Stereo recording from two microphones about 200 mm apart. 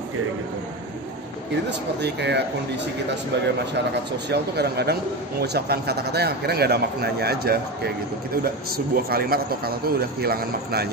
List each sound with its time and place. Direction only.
1.7 s speech: 60° right (ahead or behind)
4.3 s a man's voice: 55° right (ahead or behind)